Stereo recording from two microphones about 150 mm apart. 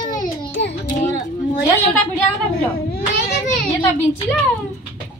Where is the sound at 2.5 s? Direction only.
85° left.